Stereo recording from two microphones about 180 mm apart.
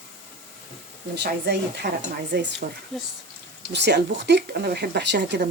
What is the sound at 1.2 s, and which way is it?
Speech, 65° right (ahead or behind).